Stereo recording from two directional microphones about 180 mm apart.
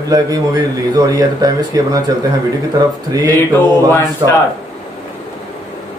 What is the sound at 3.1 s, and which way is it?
A man's voice, 20° right (ahead or behind).